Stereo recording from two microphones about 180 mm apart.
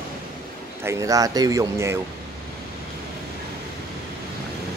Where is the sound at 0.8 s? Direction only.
20° right (ahead or behind).